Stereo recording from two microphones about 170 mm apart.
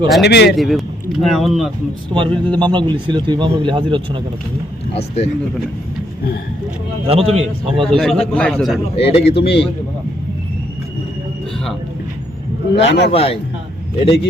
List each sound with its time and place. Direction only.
0.2 s a man's voice: 75° left (ahead or behind)
0.5 s a man's voice: centre (ahead or behind)
2.1 s speech: 30° right (ahead or behind)
4.9 s speech: 35° left (ahead or behind)
7.1 s a man's voice: 35° right (ahead or behind)
7.9 s a man's voice: 5° left (ahead or behind)
9.0 s speech: 35° left (ahead or behind)
9.4 s a man's voice: 75° left (ahead or behind)
12.7 s a man's voice: 90° left
13.1 s speech: 35° left (ahead or behind)